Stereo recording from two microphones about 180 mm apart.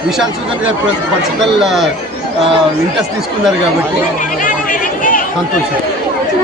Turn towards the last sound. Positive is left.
turn(degrees=50)  # may be behind; listen again after turning